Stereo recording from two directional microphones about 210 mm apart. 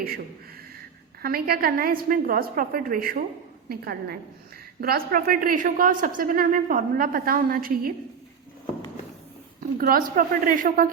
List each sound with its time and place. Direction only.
1.2 s a man's voice: 45° right (ahead or behind)
9.6 s a man's voice: 45° right (ahead or behind)